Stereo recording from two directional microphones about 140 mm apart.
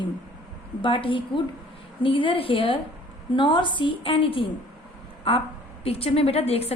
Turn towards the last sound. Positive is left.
turn(degrees=45)  # may be behind; listen again after turning